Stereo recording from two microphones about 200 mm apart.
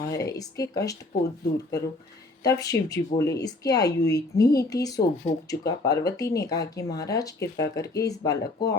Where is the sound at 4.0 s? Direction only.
55° left (ahead or behind).